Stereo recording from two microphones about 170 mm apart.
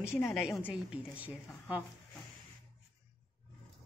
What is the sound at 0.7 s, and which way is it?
Speech, 5° right (ahead or behind).